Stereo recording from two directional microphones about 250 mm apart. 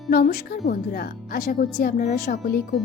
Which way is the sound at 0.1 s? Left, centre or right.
Left.